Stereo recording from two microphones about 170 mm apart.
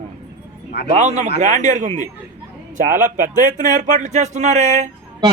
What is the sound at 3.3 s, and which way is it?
Speech, 50° right (ahead or behind).